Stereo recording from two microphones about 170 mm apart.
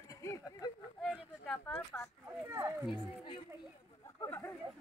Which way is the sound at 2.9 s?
30° left (ahead or behind).